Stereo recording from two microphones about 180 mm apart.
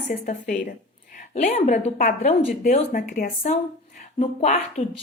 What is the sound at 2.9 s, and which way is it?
A woman's voice, 50° left (ahead or behind).